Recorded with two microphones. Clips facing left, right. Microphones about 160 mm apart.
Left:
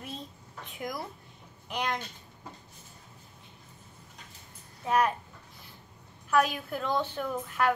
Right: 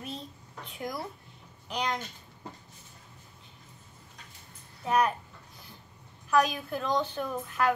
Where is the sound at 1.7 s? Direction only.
15° right (ahead or behind).